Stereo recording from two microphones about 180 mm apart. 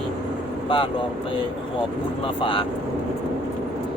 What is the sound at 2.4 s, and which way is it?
Speech, 30° left (ahead or behind).